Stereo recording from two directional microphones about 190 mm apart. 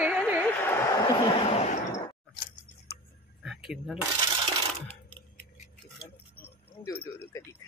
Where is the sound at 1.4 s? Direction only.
35° left (ahead or behind).